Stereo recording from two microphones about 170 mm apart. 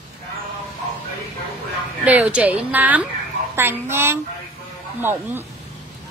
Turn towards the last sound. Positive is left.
turn(degrees=-15)  # may be behind; listen again after turning